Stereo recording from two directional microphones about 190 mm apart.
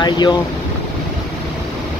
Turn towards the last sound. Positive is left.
turn(degrees=20)  # may be behind; listen again after turning